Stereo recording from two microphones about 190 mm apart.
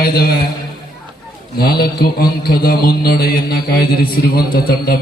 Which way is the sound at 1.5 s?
55° left (ahead or behind).